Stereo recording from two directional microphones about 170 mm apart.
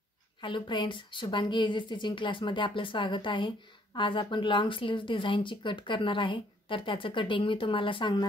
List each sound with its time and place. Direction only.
0.4 s a woman's voice: 30° left (ahead or behind)